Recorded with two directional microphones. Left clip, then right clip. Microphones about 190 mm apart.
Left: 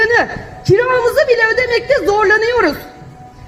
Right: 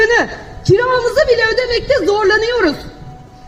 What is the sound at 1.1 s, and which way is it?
Speech, 50° right (ahead or behind).